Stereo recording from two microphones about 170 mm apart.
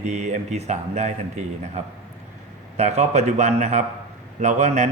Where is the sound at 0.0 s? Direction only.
45° right (ahead or behind).